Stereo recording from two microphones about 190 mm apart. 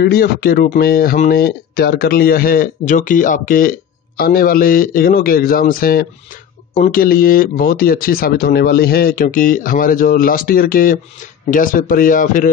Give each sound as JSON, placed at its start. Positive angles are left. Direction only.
{"t": 0.0, "sound": "speech", "side_deg": 55}